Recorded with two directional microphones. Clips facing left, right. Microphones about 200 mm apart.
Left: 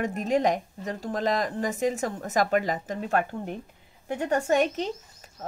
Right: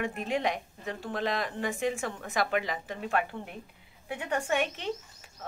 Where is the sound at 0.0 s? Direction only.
40° left (ahead or behind).